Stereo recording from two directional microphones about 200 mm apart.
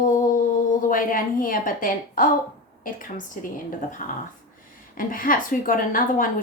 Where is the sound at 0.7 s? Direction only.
40° left (ahead or behind).